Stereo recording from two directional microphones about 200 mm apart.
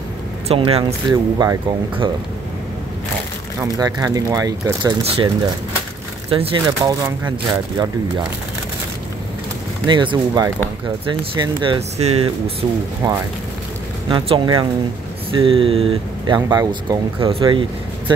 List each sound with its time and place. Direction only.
0.5 s speech: 30° right (ahead or behind)
1.1 s speech: 15° right (ahead or behind)
3.6 s speech: 20° right (ahead or behind)
5.0 s speech: 30° right (ahead or behind)
6.3 s speech: 25° right (ahead or behind)
9.8 s speech: 25° right (ahead or behind)
14.0 s speech: 25° right (ahead or behind)